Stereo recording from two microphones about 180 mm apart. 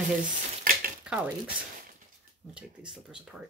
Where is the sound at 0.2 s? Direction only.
50° right (ahead or behind).